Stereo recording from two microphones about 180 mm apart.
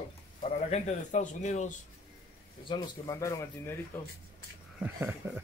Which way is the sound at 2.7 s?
20° left (ahead or behind).